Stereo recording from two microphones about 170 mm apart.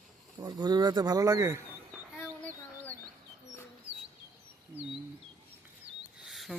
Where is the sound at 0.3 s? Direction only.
25° right (ahead or behind).